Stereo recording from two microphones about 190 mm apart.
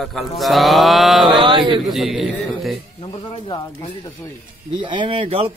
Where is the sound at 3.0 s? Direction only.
25° left (ahead or behind).